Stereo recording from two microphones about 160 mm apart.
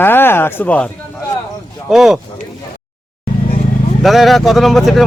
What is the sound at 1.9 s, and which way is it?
Speech, centre (ahead or behind).